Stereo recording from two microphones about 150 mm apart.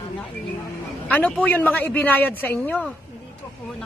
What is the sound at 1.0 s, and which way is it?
Speech, 10° left (ahead or behind).